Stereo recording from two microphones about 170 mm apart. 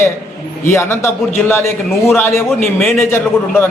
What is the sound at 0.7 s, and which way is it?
A man's voice, 15° left (ahead or behind).